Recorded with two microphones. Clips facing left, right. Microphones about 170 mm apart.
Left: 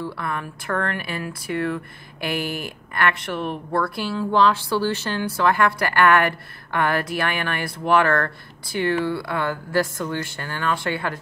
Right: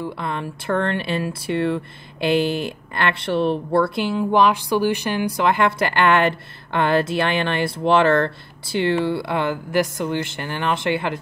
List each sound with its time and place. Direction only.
0.0 s speech: 20° right (ahead or behind)